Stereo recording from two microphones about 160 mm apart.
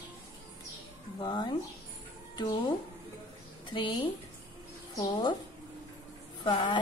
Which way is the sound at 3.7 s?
30° left (ahead or behind).